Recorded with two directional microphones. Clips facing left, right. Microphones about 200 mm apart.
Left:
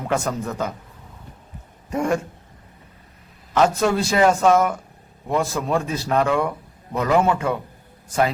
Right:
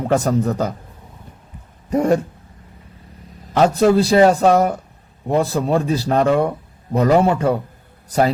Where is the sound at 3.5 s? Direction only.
35° right (ahead or behind).